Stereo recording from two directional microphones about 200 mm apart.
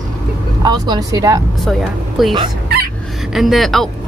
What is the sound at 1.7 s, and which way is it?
Speech, centre (ahead or behind).